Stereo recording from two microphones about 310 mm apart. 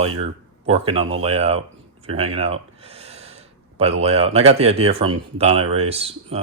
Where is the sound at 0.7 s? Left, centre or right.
Centre.